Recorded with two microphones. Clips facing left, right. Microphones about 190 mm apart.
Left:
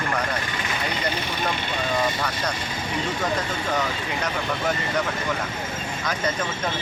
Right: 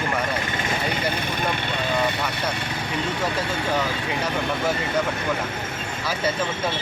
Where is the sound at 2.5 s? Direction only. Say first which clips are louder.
Right 2 dB; 60° right (ahead or behind).